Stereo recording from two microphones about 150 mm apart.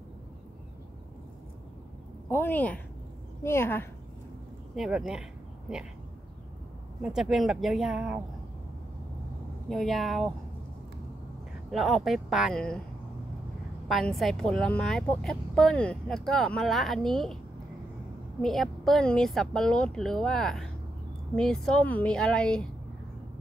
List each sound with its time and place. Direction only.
2.2 s a woman's voice: 15° left (ahead or behind)
4.7 s a woman's voice: 5° right (ahead or behind)
7.0 s a woman's voice: 5° right (ahead or behind)
9.7 s a woman's voice: centre (ahead or behind)
11.7 s a woman's voice: centre (ahead or behind)
13.8 s a woman's voice: centre (ahead or behind)
18.4 s a woman's voice: centre (ahead or behind)